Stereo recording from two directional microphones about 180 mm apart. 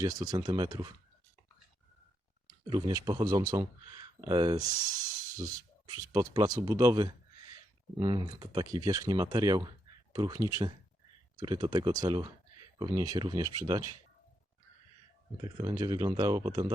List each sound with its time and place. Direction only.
0.0 s speech: 20° right (ahead or behind)
2.6 s speech: 25° right (ahead or behind)
5.8 s speech: 20° right (ahead or behind)
15.4 s speech: 25° right (ahead or behind)